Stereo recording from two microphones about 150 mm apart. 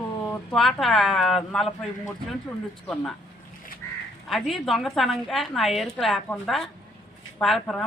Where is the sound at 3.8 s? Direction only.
15° left (ahead or behind).